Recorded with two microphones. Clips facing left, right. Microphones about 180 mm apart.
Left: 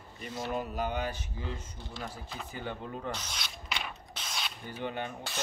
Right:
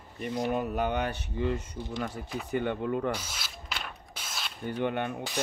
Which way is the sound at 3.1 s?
5° right (ahead or behind).